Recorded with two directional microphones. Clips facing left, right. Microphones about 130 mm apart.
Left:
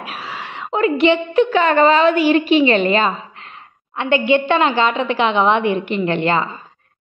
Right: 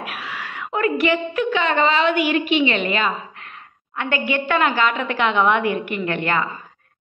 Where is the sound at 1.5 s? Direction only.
45° left (ahead or behind).